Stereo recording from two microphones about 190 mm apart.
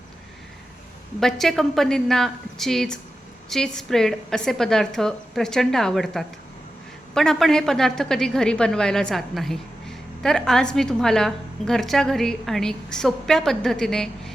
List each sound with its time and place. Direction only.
1.2 s a woman's voice: centre (ahead or behind)